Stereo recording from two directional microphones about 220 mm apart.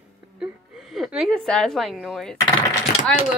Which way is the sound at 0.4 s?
Centre (ahead or behind).